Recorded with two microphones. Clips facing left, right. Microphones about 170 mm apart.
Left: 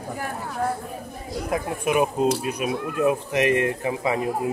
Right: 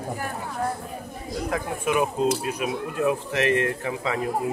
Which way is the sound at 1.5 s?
15° left (ahead or behind).